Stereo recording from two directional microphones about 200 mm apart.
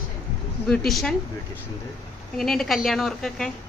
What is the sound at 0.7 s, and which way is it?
Speech, centre (ahead or behind).